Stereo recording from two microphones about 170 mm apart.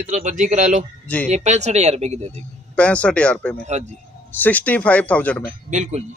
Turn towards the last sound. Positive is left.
turn(degrees=-45)  # may be behind; listen again after turning